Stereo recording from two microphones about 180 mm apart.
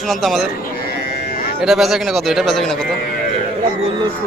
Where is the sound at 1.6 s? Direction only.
Centre (ahead or behind).